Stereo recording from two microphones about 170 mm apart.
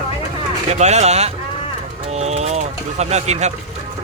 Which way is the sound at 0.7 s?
40° right (ahead or behind).